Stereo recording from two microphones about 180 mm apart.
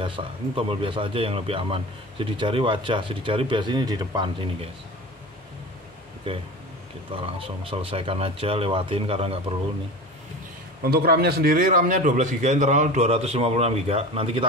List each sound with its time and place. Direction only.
0.0 s speech: 30° right (ahead or behind)
6.3 s speech: 30° right (ahead or behind)
10.8 s a man's voice: 60° right (ahead or behind); by 14.4 s 35° right (ahead or behind)